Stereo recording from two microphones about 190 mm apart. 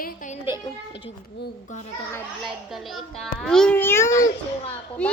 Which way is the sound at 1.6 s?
40° left (ahead or behind).